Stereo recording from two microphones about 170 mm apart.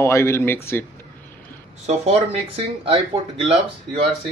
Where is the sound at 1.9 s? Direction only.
40° right (ahead or behind).